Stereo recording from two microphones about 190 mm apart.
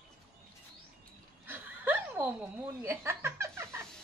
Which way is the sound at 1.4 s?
10° right (ahead or behind).